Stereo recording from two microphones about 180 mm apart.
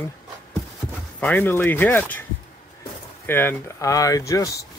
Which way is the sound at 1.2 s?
10° left (ahead or behind).